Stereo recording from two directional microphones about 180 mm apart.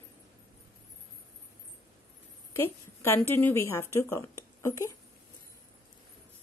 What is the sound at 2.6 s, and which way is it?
Speech, 15° left (ahead or behind).